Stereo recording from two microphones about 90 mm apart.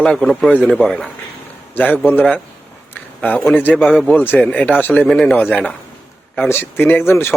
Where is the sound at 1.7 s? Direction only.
20° left (ahead or behind).